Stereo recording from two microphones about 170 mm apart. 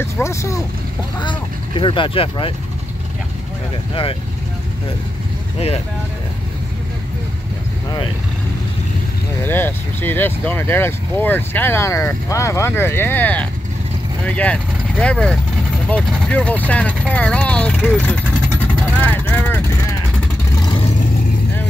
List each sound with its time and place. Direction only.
0.0 s speech: 15° left (ahead or behind)
1.2 s speech: 30° left (ahead or behind)
9.4 s speech: 10° left (ahead or behind)
18.9 s vehicle: 10° left (ahead or behind)
20.6 s vehicle: 30° left (ahead or behind)